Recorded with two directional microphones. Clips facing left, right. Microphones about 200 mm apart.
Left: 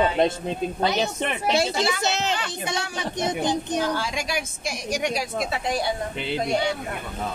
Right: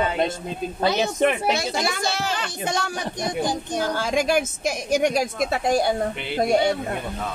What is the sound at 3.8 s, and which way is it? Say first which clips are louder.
A woman's voice: right 3 dB; 45° right (ahead or behind).